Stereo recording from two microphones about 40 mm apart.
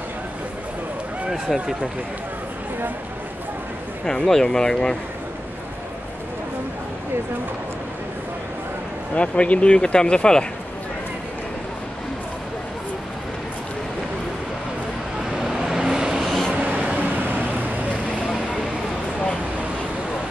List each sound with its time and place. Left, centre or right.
1.3 s speech: centre
4.0 s speech: centre
9.1 s speech: left
15.3 s vehicle: centre
15.8 s vehicle: right
16.2 s vehicle: centre
16.5 s vehicle: right